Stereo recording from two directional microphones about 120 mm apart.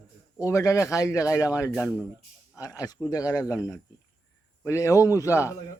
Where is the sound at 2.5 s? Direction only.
30° left (ahead or behind).